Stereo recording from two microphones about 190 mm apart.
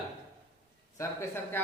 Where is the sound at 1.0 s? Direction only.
10° left (ahead or behind).